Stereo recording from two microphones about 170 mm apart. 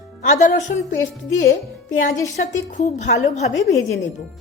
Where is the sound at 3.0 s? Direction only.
40° left (ahead or behind).